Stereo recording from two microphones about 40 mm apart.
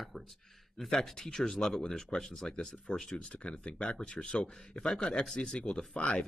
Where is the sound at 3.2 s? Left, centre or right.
Left.